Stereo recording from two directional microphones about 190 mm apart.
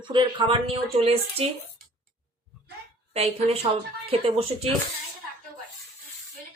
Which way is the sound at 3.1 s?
35° right (ahead or behind).